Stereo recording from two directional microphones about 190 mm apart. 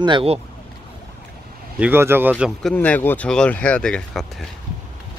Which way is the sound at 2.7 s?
10° left (ahead or behind).